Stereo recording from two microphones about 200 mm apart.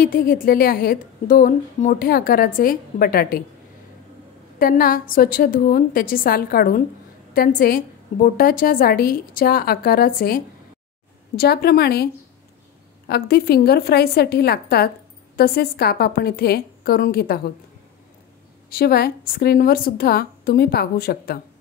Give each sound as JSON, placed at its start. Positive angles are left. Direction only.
{"t": 0.0, "sound": "a woman's voice", "side_deg": 45}
{"t": 4.6, "sound": "a woman's voice", "side_deg": 45}
{"t": 18.7, "sound": "a woman's voice", "side_deg": 50}